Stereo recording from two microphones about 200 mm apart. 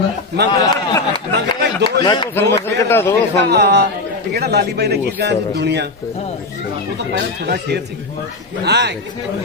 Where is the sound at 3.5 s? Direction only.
55° right (ahead or behind).